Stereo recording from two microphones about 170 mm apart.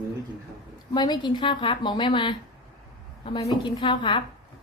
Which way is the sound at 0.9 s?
25° left (ahead or behind).